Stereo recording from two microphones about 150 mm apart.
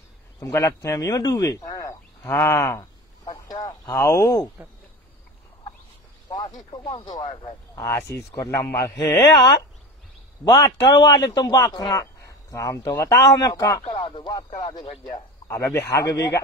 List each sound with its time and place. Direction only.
0.4 s speech: 20° left (ahead or behind)
6.7 s speech: 35° left (ahead or behind)
7.4 s a man's voice: 20° left (ahead or behind)
14.0 s music: 30° left (ahead or behind)
15.4 s a man's voice: 15° left (ahead or behind)